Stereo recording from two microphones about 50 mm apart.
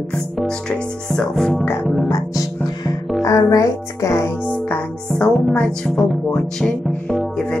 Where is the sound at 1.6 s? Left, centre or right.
Left.